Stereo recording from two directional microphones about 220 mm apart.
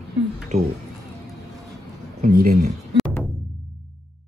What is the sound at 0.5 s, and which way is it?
Speech, 30° right (ahead or behind).